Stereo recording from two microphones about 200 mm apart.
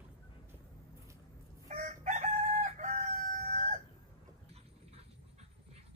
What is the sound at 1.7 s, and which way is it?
Chicken, 40° right (ahead or behind).